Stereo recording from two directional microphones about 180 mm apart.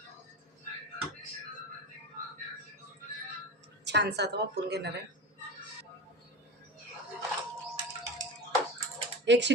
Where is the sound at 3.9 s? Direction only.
70° right (ahead or behind).